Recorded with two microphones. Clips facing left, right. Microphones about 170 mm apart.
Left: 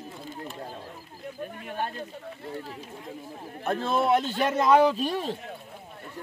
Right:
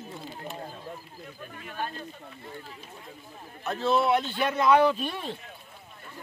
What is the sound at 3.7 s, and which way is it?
Speech, 50° left (ahead or behind).